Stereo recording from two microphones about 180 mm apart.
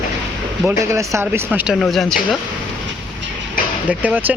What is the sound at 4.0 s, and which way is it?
Speech, 10° right (ahead or behind).